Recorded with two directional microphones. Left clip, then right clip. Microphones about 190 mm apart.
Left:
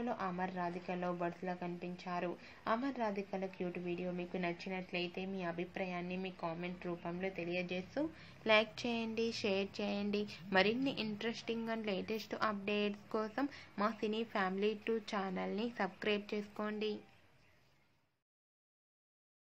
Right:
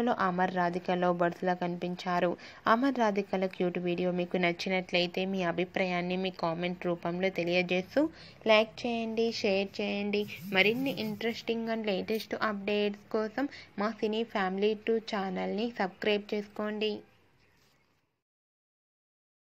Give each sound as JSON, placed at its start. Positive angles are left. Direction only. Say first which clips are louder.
{"t": 0.0, "sound": "a woman's voice", "louder": "right 11 dB", "side_deg": -40}
{"t": 8.5, "sound": "a woman's voice", "louder": "right 7 dB", "side_deg": -15}
{"t": 9.8, "sound": "speech", "louder": "right 7 dB", "side_deg": 35}
{"t": 10.2, "sound": "a woman's voice", "louder": "right 5 dB", "side_deg": 5}